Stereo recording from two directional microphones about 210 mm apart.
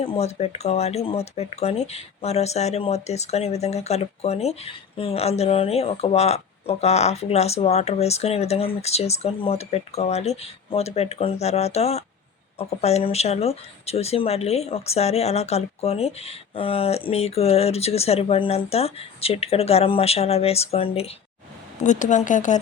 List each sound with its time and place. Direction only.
0.0 s speech: 30° left (ahead or behind)